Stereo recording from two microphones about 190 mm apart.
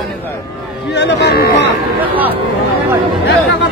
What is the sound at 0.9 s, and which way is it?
Speech, 65° left (ahead or behind).